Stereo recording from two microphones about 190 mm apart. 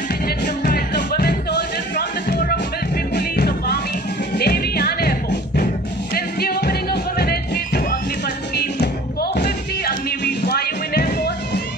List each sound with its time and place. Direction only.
0.7 s music: 55° left (ahead or behind)